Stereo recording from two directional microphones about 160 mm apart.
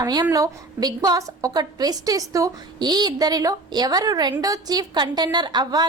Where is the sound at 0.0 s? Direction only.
25° right (ahead or behind).